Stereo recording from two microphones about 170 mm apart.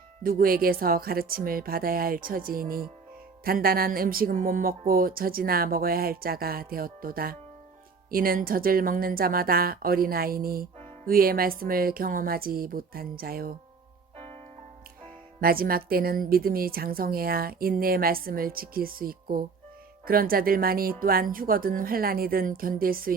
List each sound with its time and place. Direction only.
0.2 s a woman's voice: 60° right (ahead or behind)
14.2 s music: 35° right (ahead or behind)
15.4 s a woman's voice: 60° right (ahead or behind)